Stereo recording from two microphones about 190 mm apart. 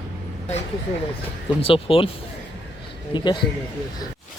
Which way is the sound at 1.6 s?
30° left (ahead or behind).